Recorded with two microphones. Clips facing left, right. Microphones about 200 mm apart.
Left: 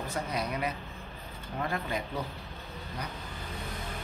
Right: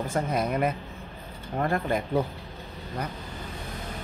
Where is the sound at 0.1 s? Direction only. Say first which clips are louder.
Right 7 dB; 50° right (ahead or behind).